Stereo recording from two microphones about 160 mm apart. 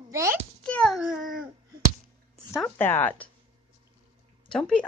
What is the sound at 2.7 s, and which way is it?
Speech, 15° left (ahead or behind).